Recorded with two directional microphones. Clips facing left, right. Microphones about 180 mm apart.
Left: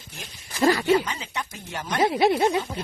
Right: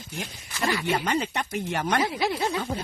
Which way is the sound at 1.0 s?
65° right (ahead or behind).